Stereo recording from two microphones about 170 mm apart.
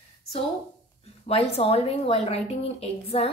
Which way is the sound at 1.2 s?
35° left (ahead or behind).